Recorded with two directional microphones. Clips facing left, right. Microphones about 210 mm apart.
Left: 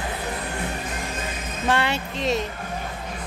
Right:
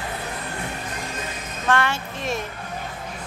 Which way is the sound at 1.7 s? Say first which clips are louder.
Right 1 dB; 15° left (ahead or behind).